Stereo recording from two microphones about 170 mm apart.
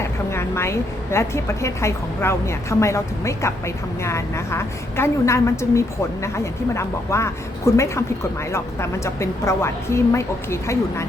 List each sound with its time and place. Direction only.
0.3 s speech: 15° left (ahead or behind)